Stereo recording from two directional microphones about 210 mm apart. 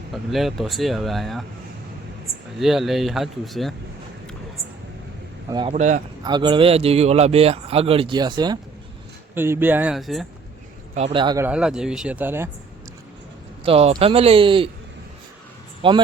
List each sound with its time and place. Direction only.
0.1 s speech: centre (ahead or behind)
2.6 s speech: centre (ahead or behind)
5.5 s speech: 20° right (ahead or behind)
5.7 s a man's voice: 35° right (ahead or behind)
6.2 s speech: 20° right (ahead or behind); by 10.2 s centre (ahead or behind)
10.9 s speech: 25° right (ahead or behind)
11.4 s speech: 5° right (ahead or behind)
13.7 s speech: 30° right (ahead or behind)
15.8 s speech: 25° right (ahead or behind)